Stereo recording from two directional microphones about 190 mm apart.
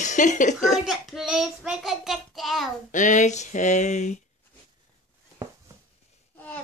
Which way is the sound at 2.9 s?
40° left (ahead or behind).